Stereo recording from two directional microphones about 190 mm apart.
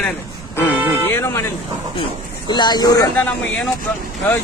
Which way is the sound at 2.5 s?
20° left (ahead or behind).